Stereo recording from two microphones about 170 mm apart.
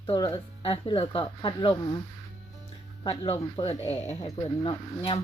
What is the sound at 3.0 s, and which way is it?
Speech, 35° left (ahead or behind).